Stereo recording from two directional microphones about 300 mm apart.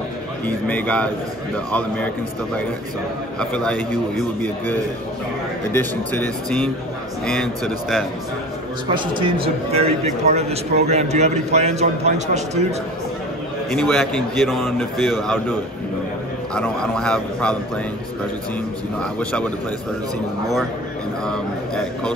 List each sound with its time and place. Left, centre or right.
0.5 s a man's voice: centre
3.3 s a man's voice: centre
5.7 s a man's voice: centre
8.9 s a man's voice: centre
13.7 s a man's voice: centre
16.5 s a man's voice: centre
19.1 s a man's voice: centre
21.3 s a man's voice: centre